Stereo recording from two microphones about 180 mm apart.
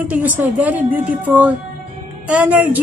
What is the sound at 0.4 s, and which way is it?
A woman's voice, 10° right (ahead or behind).